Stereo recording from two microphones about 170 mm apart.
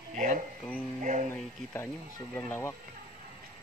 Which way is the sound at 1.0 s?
45° right (ahead or behind).